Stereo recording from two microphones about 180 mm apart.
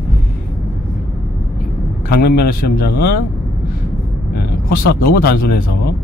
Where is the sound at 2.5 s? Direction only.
55° left (ahead or behind).